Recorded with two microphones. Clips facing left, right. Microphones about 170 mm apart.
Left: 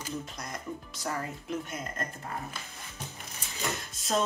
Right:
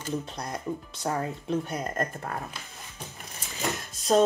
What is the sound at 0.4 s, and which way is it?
Speech, 25° right (ahead or behind).